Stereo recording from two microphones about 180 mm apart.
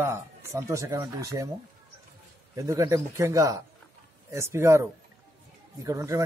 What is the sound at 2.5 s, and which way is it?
Speech, 15° right (ahead or behind).